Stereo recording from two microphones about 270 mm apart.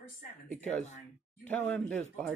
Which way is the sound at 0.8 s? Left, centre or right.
Left.